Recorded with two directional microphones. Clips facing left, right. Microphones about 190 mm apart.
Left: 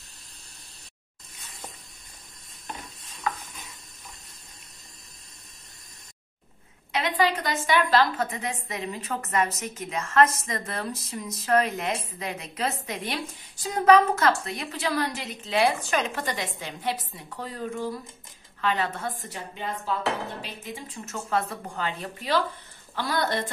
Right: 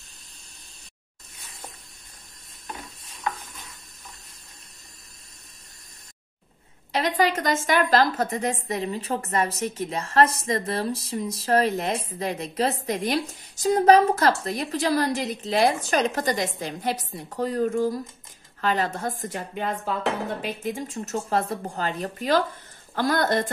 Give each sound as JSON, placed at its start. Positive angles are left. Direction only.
{"t": 6.9, "sound": "a woman's voice", "side_deg": -40}